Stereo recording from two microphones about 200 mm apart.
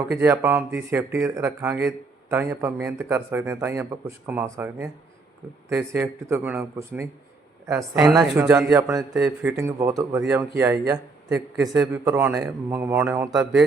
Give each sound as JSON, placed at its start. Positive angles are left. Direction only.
{"t": 0.1, "sound": "a man's voice", "side_deg": -10}
{"t": 11.7, "sound": "a man's voice", "side_deg": -15}